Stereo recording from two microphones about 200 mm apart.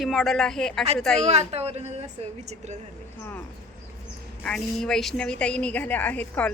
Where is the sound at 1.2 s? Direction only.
30° right (ahead or behind).